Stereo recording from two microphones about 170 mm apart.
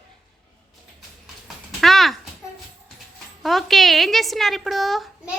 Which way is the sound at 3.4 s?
Centre (ahead or behind).